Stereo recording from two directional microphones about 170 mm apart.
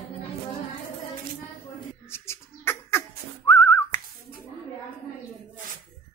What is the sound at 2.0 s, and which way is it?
Bird, 15° left (ahead or behind).